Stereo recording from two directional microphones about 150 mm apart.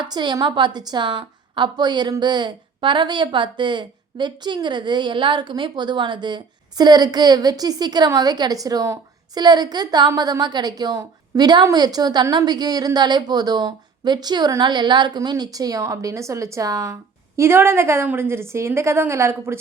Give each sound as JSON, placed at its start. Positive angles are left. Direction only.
{"t": 0.0, "sound": "a woman's voice", "side_deg": -30}